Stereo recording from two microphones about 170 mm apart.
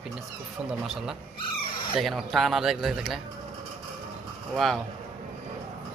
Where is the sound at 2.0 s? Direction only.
Centre (ahead or behind).